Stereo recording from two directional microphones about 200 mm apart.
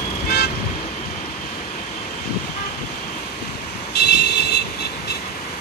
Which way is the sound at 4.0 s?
55° left (ahead or behind).